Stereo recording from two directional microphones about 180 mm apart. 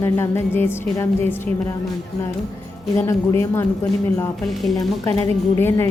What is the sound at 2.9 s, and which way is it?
Speech, 15° left (ahead or behind).